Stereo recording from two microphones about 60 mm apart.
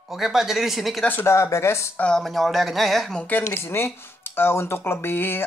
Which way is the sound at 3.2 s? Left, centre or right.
Left.